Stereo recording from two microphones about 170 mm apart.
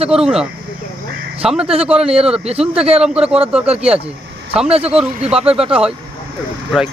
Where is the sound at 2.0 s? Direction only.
35° right (ahead or behind).